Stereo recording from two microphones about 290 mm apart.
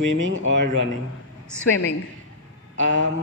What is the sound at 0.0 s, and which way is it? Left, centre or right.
Speech, right.